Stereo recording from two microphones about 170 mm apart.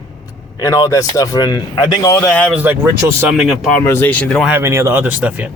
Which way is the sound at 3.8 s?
10° left (ahead or behind).